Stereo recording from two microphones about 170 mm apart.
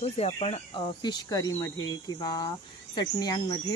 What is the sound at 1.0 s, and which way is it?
Cricket, 25° left (ahead or behind).